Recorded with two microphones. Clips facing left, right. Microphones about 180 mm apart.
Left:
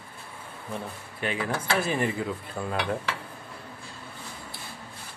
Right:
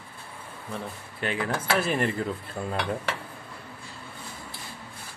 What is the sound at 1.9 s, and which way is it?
Speech, 10° left (ahead or behind).